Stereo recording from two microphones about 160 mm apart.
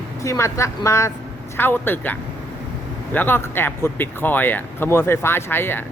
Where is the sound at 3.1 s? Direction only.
15° left (ahead or behind).